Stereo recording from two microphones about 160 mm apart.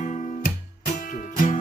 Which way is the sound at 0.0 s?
50° left (ahead or behind).